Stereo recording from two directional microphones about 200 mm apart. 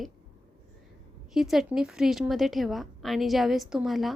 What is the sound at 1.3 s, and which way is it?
A woman's voice, centre (ahead or behind).